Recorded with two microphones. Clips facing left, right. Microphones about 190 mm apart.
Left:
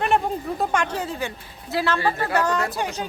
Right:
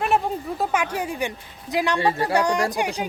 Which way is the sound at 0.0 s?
Centre (ahead or behind).